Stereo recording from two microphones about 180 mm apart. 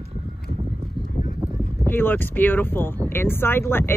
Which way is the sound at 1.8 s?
10° left (ahead or behind).